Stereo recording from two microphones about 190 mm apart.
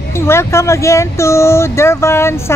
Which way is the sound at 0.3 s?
15° left (ahead or behind).